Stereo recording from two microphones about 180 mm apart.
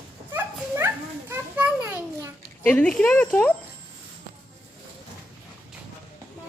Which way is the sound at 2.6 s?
5° left (ahead or behind).